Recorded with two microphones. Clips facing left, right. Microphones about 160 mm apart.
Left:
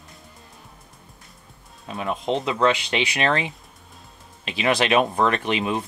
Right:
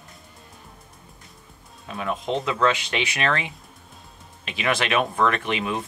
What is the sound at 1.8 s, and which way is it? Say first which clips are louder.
Speech: left 2 dB; 20° left (ahead or behind).